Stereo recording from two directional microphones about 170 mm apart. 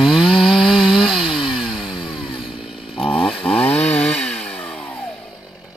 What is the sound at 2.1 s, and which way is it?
Motorcycle, 30° left (ahead or behind).